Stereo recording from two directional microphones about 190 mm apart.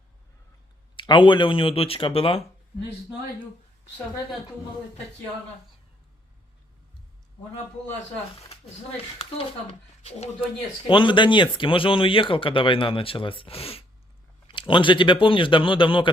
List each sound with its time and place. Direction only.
0.9 s speech: 25° left (ahead or behind)
9.6 s a woman's voice: 35° left (ahead or behind)